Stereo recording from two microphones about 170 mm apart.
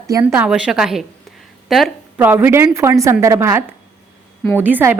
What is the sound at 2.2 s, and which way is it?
A woman's voice, 10° right (ahead or behind).